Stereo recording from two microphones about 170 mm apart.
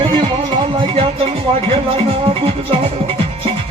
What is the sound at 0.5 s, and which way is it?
Music, 30° right (ahead or behind).